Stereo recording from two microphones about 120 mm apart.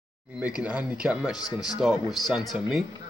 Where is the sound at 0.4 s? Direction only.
10° right (ahead or behind).